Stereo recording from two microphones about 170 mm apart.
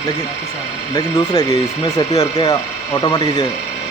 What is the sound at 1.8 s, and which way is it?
Speech, 20° left (ahead or behind).